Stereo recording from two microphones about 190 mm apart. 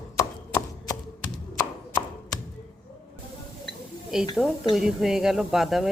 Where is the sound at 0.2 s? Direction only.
15° left (ahead or behind).